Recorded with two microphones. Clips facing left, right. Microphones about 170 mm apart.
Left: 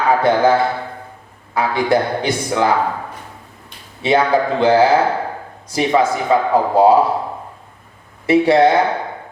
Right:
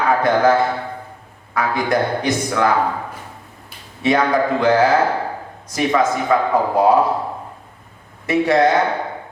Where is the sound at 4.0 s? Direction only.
30° left (ahead or behind).